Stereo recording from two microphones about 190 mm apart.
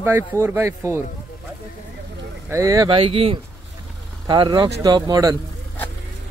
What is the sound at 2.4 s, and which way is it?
Speech, 15° right (ahead or behind).